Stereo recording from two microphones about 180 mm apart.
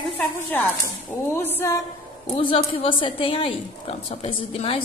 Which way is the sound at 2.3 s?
30° left (ahead or behind).